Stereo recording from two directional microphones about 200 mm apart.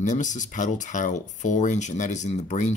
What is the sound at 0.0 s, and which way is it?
Speech, 40° left (ahead or behind).